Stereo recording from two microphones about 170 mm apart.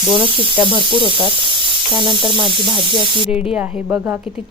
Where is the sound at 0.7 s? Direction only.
30° right (ahead or behind).